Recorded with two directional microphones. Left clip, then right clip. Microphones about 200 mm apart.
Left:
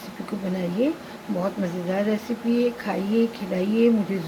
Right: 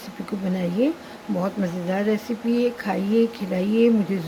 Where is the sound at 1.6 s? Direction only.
30° right (ahead or behind).